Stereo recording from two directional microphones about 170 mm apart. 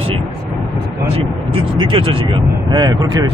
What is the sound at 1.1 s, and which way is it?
Speech, 30° right (ahead or behind).